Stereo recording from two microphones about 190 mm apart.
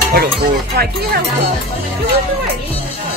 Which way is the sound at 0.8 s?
60° right (ahead or behind).